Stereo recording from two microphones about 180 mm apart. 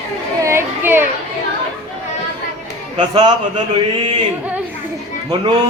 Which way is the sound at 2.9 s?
25° right (ahead or behind).